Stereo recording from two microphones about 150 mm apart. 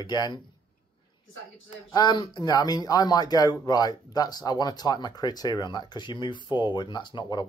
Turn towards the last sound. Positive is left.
turn(degrees=30)  # may be behind; listen again after turning